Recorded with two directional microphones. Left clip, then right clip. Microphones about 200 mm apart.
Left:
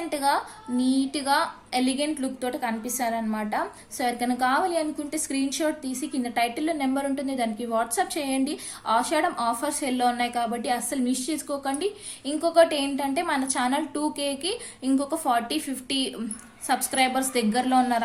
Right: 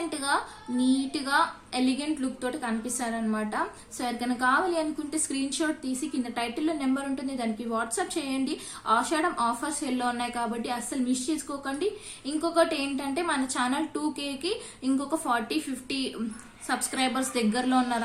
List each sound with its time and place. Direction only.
0.1 s a woman's voice: 30° left (ahead or behind)